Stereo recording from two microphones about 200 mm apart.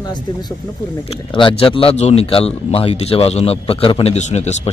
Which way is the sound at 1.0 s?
25° left (ahead or behind).